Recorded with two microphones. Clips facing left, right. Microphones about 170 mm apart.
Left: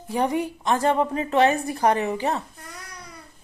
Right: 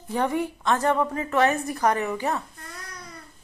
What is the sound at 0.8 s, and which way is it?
A woman's voice, 25° left (ahead or behind).